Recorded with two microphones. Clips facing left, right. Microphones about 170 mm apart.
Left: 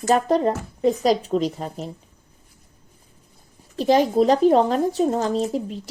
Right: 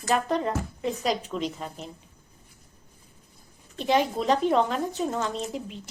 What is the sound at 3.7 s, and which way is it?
Speech, 35° left (ahead or behind).